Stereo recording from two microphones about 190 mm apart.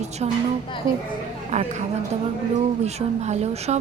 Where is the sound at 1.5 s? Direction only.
40° right (ahead or behind).